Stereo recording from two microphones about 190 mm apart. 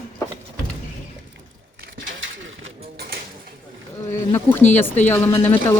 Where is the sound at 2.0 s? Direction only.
90° right.